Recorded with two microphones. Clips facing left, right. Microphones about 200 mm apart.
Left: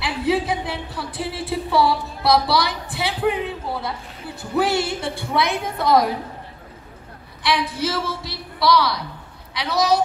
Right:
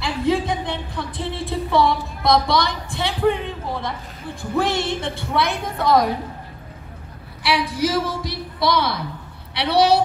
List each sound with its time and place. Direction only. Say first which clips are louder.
0.0 s music: right 1 dB; 5° left (ahead or behind)
4.4 s a woman's voice: left 1 dB; 5° left (ahead or behind)
7.4 s a woman's voice: right 2 dB; 10° right (ahead or behind)
8.5 s a woman's voice: left 2 dB; 20° right (ahead or behind)